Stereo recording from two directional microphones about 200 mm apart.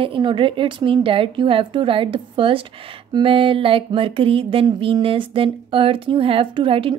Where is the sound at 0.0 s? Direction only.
25° right (ahead or behind).